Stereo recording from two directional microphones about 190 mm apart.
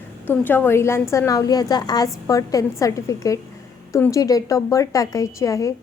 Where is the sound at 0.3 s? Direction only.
10° left (ahead or behind).